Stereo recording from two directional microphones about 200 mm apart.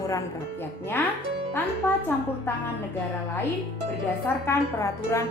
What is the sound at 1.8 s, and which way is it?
Speech, 10° left (ahead or behind).